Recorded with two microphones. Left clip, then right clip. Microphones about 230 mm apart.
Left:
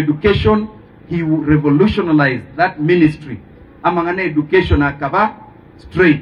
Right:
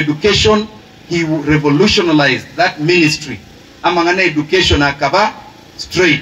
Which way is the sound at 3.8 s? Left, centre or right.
Right.